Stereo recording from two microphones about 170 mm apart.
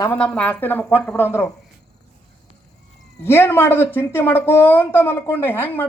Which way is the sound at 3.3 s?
15° left (ahead or behind).